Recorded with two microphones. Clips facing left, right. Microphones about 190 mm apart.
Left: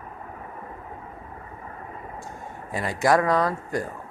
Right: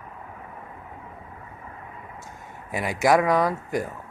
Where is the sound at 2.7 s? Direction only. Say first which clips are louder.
Right 1 dB; 15° right (ahead or behind).